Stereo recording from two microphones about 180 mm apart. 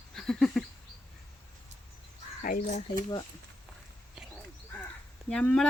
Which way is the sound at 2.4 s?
45° left (ahead or behind).